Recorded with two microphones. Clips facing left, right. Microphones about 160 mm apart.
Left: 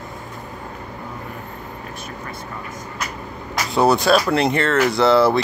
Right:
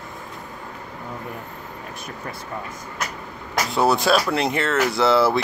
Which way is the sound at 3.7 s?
Centre (ahead or behind).